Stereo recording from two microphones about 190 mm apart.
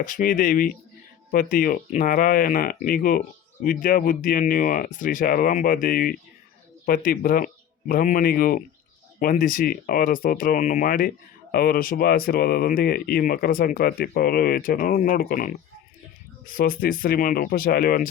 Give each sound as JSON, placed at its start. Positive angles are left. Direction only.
{"t": 0.0, "sound": "speech", "side_deg": 45}